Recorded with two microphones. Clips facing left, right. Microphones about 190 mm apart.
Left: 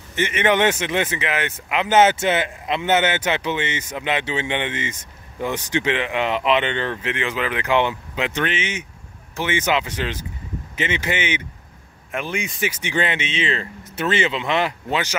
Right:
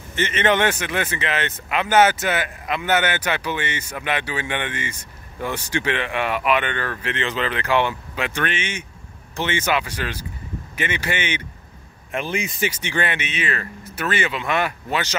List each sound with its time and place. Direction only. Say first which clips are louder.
0.1 s speech: left 1 dB; 15° left (ahead or behind)
12.8 s speech: left 2 dB; 20° left (ahead or behind)